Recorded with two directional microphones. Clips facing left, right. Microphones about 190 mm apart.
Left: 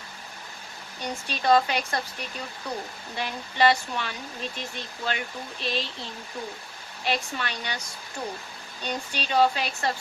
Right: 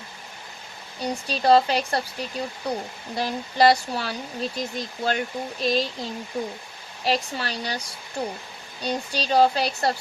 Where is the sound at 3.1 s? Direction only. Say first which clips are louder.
Right 6 dB; 40° right (ahead or behind).